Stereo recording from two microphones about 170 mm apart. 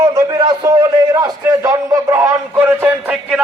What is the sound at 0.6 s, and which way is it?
A man's voice, 20° right (ahead or behind).